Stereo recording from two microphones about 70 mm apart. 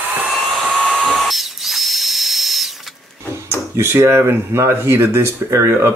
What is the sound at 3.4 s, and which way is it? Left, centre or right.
Speech, right.